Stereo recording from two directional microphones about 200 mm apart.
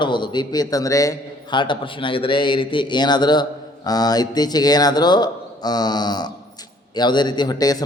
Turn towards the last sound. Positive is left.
turn(degrees=20)  # may be behind; listen again after turning